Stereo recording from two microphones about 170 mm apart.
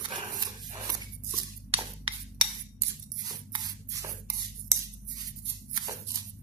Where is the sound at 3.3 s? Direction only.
25° right (ahead or behind).